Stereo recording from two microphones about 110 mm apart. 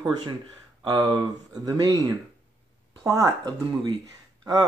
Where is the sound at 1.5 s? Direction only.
35° right (ahead or behind).